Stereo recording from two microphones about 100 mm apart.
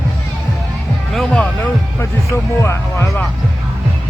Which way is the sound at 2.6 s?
30° left (ahead or behind).